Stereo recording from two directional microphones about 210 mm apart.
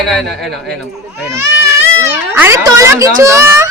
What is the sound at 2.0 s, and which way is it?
Speech, 10° right (ahead or behind).